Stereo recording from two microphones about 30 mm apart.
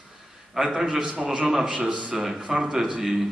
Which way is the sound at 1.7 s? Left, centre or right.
Right.